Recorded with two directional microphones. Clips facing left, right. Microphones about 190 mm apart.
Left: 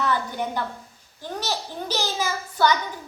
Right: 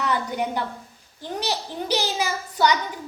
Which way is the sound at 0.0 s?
15° right (ahead or behind).